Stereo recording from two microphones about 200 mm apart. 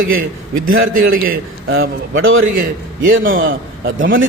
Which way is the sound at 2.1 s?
85° right.